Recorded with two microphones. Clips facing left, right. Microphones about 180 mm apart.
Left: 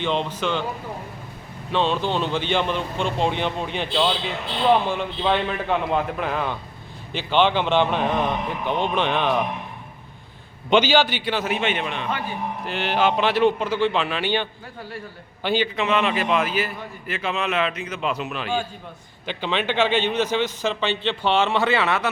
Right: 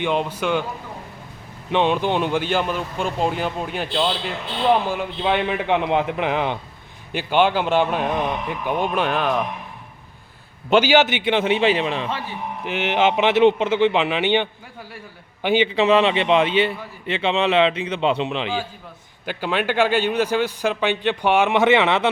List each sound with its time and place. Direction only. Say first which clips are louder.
0.0 s a man's voice: right 2 dB; 10° right (ahead or behind)
1.7 s a man's voice: right 3 dB; 15° right (ahead or behind)
10.7 s a man's voice: right 1 dB; 10° right (ahead or behind)
10.9 s a man's voice: right 3 dB; 20° right (ahead or behind)
12.6 s a man's voice: right 3 dB; 20° right (ahead or behind)
15.4 s a man's voice: right 4 dB; 20° right (ahead or behind)
15.7 s a man's voice: right 5 dB; 30° right (ahead or behind)
19.2 s a man's voice: right 2 dB; 10° right (ahead or behind); by 22.1 s 25° right (ahead or behind)